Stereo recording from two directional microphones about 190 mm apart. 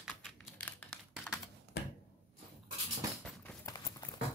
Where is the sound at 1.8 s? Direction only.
65° left (ahead or behind).